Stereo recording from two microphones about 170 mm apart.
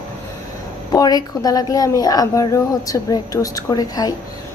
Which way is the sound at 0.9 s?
20° left (ahead or behind).